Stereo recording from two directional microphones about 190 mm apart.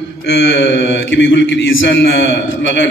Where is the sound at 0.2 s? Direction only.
70° left (ahead or behind).